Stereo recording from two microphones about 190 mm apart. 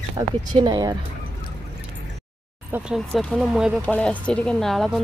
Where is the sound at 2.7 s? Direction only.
5° right (ahead or behind).